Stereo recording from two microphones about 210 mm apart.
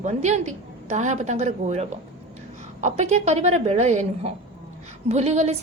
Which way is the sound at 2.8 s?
35° right (ahead or behind).